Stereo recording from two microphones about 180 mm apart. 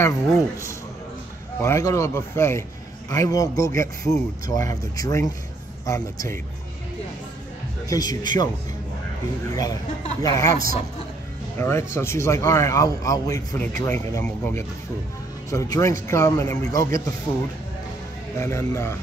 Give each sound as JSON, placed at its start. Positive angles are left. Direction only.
{"t": 0.0, "sound": "a man's voice", "side_deg": 15}
{"t": 7.9, "sound": "a man's voice", "side_deg": 20}
{"t": 10.2, "sound": "speech", "side_deg": 15}
{"t": 10.5, "sound": "a man's voice", "side_deg": -50}
{"t": 11.5, "sound": "a man's voice", "side_deg": 15}
{"t": 18.4, "sound": "speech", "side_deg": 15}